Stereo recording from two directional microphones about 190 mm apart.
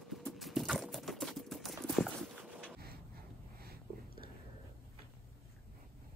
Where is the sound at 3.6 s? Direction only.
55° right (ahead or behind).